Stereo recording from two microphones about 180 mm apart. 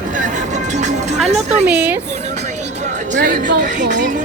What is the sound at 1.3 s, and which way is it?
Speech, 40° right (ahead or behind).